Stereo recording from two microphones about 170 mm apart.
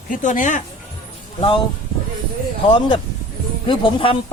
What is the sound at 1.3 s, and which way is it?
Speech, 30° left (ahead or behind).